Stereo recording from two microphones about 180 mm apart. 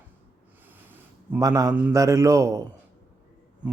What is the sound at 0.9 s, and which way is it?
A man's voice, 15° right (ahead or behind).